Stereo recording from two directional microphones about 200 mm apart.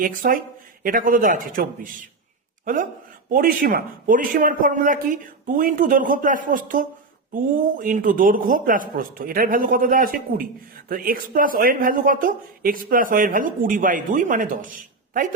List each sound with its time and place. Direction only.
0.0 s speech: 45° right (ahead or behind)